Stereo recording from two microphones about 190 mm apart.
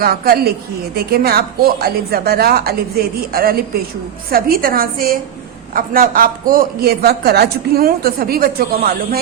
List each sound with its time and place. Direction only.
0.0 s a man's voice: 50° right (ahead or behind)